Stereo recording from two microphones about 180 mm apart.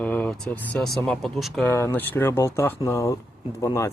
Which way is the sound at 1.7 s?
15° left (ahead or behind).